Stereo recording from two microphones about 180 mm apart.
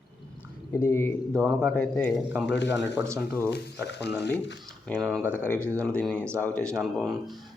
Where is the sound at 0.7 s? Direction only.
15° left (ahead or behind).